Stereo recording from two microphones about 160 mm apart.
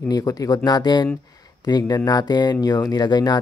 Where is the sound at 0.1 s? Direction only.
25° left (ahead or behind).